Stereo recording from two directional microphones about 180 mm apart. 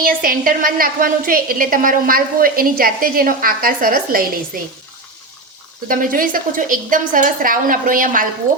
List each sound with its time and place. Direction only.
0.0 s a woman's voice: 50° right (ahead or behind)
5.9 s a woman's voice: 50° right (ahead or behind)